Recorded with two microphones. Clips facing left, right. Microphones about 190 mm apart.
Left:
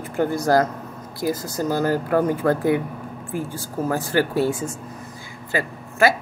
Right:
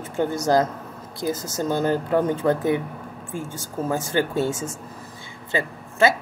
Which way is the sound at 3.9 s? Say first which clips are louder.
Left 2 dB; 20° right (ahead or behind).